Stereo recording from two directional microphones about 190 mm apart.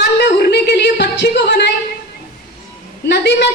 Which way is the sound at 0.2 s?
60° left (ahead or behind).